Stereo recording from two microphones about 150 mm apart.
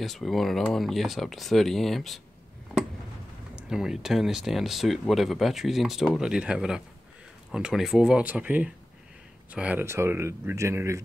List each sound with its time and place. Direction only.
0.0 s speech: centre (ahead or behind)
3.7 s speech: 5° right (ahead or behind)